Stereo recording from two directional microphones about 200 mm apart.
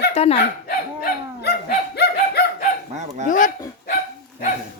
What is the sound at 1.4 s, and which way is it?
Dog, 55° left (ahead or behind).